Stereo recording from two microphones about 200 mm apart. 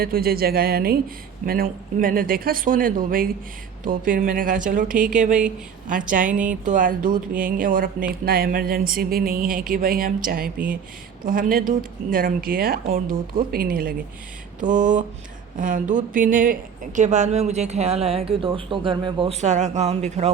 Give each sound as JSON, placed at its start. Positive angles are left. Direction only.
{"t": 0.0, "sound": "speech", "side_deg": -50}